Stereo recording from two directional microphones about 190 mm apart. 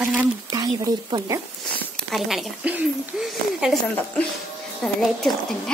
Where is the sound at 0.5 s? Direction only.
20° right (ahead or behind).